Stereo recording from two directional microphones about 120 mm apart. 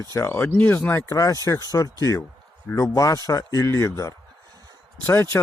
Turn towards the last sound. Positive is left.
turn(degrees=20)  # may be behind; listen again after turning